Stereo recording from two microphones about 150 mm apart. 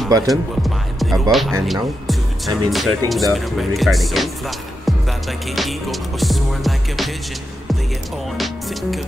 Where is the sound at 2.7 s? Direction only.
Centre (ahead or behind).